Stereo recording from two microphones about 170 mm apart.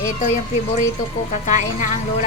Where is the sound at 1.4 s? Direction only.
45° left (ahead or behind).